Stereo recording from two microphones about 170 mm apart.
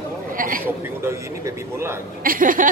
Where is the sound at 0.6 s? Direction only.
15° right (ahead or behind).